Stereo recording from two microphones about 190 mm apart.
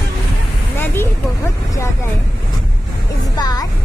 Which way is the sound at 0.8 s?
15° left (ahead or behind).